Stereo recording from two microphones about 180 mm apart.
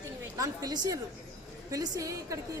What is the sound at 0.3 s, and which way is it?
A woman's voice, 20° right (ahead or behind).